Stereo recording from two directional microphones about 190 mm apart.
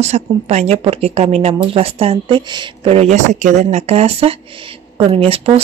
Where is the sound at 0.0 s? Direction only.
35° right (ahead or behind).